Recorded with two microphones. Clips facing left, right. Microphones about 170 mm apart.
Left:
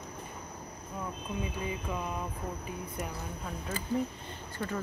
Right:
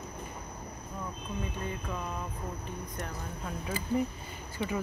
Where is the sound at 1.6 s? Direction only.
10° left (ahead or behind).